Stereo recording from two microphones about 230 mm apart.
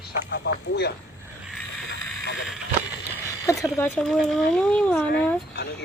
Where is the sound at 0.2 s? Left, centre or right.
Left.